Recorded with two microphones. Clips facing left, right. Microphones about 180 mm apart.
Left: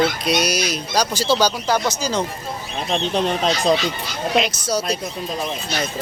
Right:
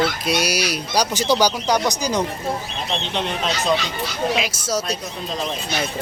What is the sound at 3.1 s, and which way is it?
Speech, 35° left (ahead or behind).